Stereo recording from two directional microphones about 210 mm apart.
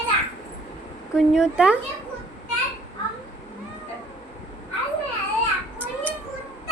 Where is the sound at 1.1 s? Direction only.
5° right (ahead or behind).